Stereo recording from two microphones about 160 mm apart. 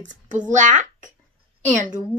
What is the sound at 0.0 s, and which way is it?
A child's voice, 55° right (ahead or behind).